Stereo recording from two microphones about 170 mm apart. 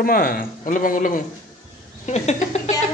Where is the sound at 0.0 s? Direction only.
60° left (ahead or behind).